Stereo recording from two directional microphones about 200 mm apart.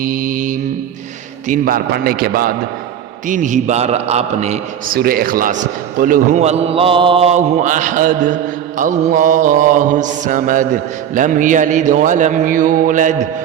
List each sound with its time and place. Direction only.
0.0 s a man's voice: 45° right (ahead or behind)
3.2 s mantra: 40° right (ahead or behind)
4.9 s a man's voice: 50° right (ahead or behind)
6.0 s mantra: 45° right (ahead or behind)